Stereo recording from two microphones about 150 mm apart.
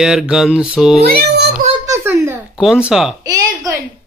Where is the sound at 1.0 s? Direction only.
90° right.